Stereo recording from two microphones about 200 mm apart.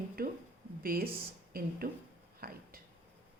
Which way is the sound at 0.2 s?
50° right (ahead or behind).